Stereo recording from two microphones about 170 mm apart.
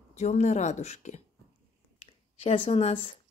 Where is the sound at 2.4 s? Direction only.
35° left (ahead or behind).